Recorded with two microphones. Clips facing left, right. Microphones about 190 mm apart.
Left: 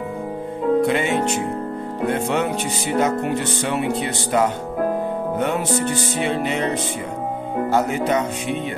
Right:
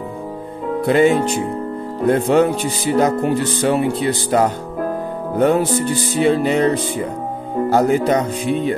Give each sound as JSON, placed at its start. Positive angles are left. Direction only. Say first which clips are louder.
{"t": 0.7, "sound": "music", "louder": "right 7 dB", "side_deg": -35}